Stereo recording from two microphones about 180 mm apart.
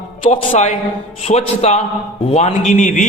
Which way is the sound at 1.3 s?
35° left (ahead or behind).